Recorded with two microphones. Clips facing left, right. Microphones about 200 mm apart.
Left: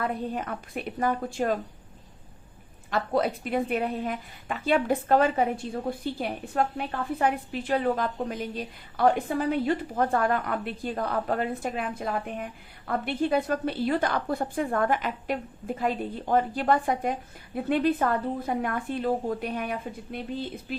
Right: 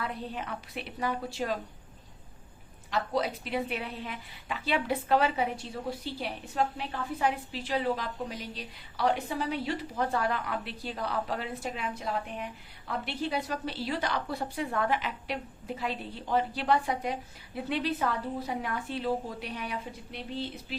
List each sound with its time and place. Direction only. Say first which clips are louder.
0.0 s a woman's voice: left 6 dB; 50° left (ahead or behind)
2.9 s a woman's voice: left 4 dB; 55° left (ahead or behind)